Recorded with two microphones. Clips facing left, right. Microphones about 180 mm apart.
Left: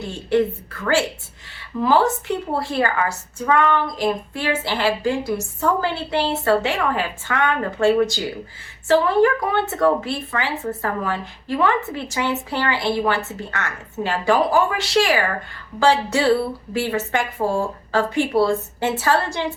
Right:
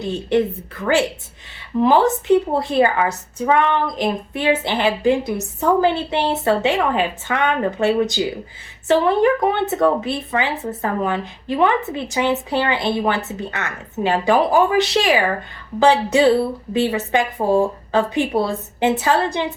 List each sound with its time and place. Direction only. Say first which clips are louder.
0.0 s a woman's voice: right 1 dB; 20° right (ahead or behind)